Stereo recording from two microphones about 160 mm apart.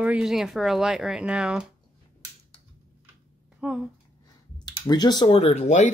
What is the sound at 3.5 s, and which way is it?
Speech, 5° right (ahead or behind).